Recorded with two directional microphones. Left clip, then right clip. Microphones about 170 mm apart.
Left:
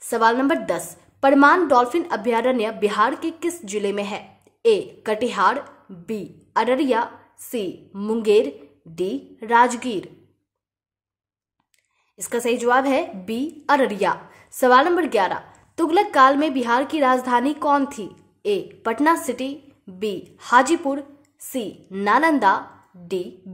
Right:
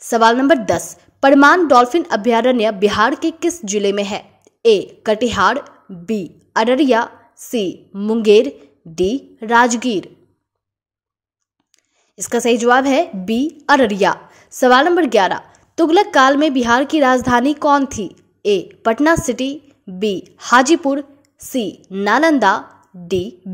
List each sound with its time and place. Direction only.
0.0 s a woman's voice: 35° right (ahead or behind)
12.2 s a woman's voice: 30° right (ahead or behind)